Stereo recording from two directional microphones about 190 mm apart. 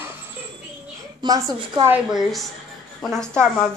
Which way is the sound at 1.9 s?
5° right (ahead or behind).